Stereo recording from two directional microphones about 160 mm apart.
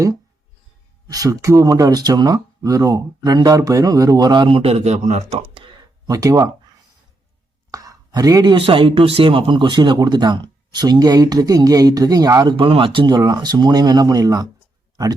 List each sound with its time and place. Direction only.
1.1 s speech: 20° right (ahead or behind); by 5.6 s 40° right (ahead or behind)
6.1 s speech: 20° right (ahead or behind)
7.7 s speech: 20° right (ahead or behind)